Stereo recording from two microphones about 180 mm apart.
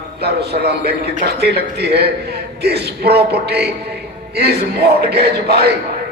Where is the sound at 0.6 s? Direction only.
60° right (ahead or behind).